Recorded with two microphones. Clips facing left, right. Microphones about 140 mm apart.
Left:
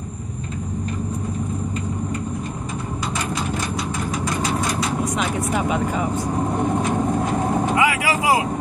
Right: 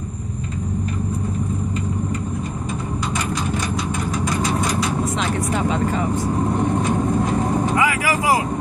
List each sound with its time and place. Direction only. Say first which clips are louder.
5.3 s speech: right 1 dB; 10° left (ahead or behind)
7.7 s vehicle: even; 20° left (ahead or behind)